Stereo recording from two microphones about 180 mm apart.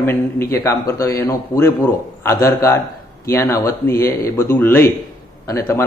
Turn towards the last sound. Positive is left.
turn(degrees=15)  # may be behind; listen again after turning